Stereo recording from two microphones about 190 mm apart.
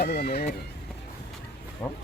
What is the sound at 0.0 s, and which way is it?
Speech, 55° left (ahead or behind).